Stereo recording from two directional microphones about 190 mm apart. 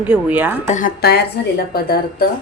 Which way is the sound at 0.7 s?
40° left (ahead or behind).